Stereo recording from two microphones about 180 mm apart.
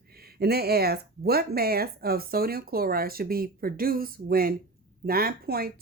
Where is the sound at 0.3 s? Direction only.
60° right (ahead or behind).